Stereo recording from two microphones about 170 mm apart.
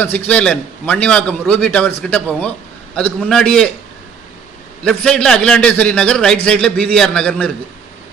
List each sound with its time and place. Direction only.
0.3 s a man's voice: 10° left (ahead or behind)
4.8 s a man's voice: 5° left (ahead or behind)